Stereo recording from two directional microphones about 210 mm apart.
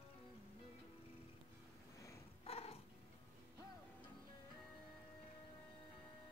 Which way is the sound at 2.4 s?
30° left (ahead or behind).